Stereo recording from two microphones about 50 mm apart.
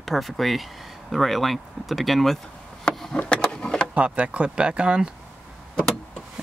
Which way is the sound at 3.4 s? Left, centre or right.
Centre.